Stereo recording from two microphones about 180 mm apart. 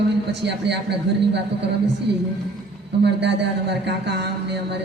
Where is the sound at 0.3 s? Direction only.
70° right (ahead or behind).